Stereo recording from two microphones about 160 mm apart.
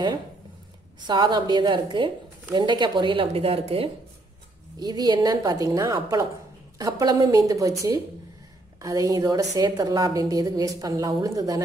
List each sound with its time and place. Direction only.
1.0 s a woman's voice: 30° right (ahead or behind)
4.7 s a woman's voice: 25° right (ahead or behind)